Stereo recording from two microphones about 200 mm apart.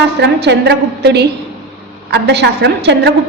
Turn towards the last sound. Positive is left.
turn(degrees=-55)  # may be behind; listen again after turning